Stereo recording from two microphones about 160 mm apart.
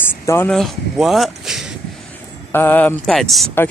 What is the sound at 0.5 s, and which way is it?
Speech, centre (ahead or behind).